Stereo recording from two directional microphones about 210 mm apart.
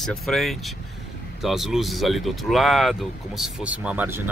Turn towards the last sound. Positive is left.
turn(degrees=-5)  # may be behind; listen again after turning